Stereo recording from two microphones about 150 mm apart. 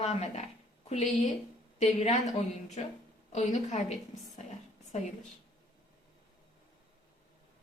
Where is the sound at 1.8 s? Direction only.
50° left (ahead or behind).